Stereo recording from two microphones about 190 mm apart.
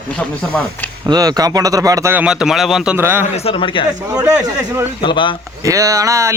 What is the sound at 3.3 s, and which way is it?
Speech, 30° left (ahead or behind).